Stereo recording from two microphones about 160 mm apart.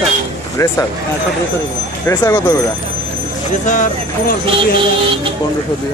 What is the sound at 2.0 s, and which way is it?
Speech, 20° left (ahead or behind).